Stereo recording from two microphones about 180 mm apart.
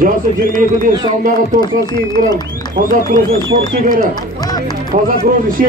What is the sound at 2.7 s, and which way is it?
Speech, 50° right (ahead or behind).